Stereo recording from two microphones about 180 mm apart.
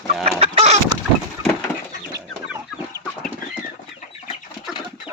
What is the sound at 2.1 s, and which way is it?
Chicken, 20° right (ahead or behind).